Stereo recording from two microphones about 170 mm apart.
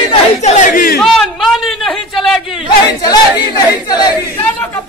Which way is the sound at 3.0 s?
25° left (ahead or behind).